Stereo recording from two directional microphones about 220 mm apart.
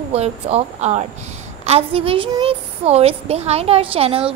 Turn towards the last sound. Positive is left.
turn(degrees=-25)  # may be behind; listen again after turning